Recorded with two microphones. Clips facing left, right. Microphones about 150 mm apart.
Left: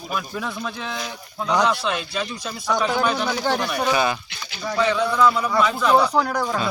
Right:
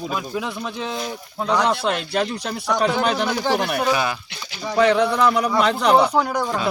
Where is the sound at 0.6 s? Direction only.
30° right (ahead or behind).